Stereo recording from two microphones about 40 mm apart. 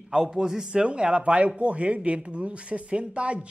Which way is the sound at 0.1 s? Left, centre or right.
Centre.